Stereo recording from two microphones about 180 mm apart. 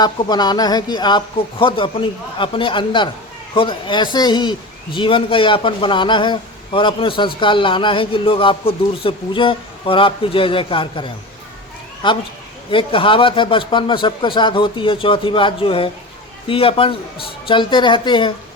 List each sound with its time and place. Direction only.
0.0 s a man's voice: 20° left (ahead or behind)